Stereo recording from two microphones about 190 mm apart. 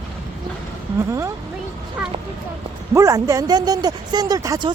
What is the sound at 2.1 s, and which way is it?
Speech, 30° right (ahead or behind).